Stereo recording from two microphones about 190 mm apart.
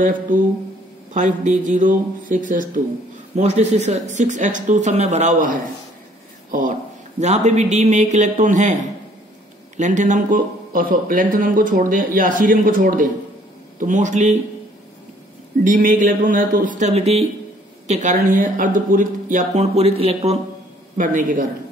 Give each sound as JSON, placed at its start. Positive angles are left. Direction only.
{"t": 1.1, "sound": "a man's voice", "side_deg": -40}
{"t": 15.6, "sound": "a man's voice", "side_deg": -45}
{"t": 21.0, "sound": "speech", "side_deg": -45}